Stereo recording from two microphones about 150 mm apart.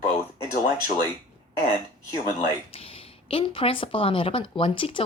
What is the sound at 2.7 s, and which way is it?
A woman's voice, 40° left (ahead or behind).